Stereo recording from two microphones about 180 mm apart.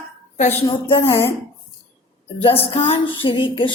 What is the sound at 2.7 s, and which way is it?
Female singing, 30° left (ahead or behind).